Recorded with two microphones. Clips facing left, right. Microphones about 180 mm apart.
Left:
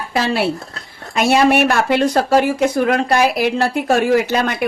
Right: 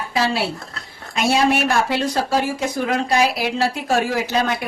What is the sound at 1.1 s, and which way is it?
Speech, 60° left (ahead or behind).